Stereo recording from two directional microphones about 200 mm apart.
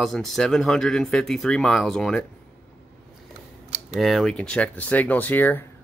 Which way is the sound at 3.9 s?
Centre (ahead or behind).